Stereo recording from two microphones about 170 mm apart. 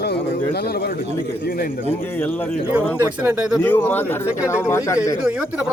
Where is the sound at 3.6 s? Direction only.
10° left (ahead or behind).